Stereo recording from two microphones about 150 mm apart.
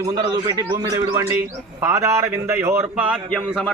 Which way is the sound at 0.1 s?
25° right (ahead or behind).